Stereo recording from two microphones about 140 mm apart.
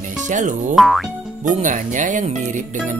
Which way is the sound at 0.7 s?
Centre (ahead or behind).